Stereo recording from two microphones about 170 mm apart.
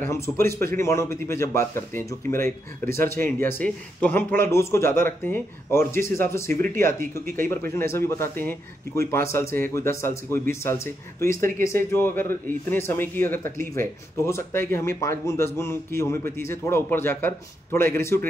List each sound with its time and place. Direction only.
0.0 s speech: 15° left (ahead or behind)